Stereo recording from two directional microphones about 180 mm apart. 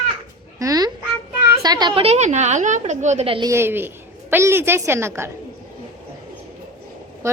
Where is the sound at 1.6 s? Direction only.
25° right (ahead or behind).